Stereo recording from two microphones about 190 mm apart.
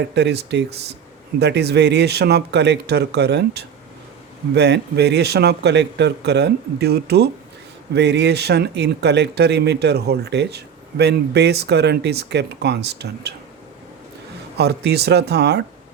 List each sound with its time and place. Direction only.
0.1 s speech: 65° right (ahead or behind)
14.6 s speech: 60° right (ahead or behind)